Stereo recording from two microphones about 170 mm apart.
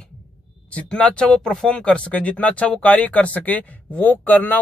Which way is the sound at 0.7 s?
5° left (ahead or behind).